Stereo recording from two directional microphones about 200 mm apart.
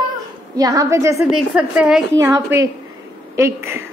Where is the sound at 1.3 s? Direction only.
5° right (ahead or behind).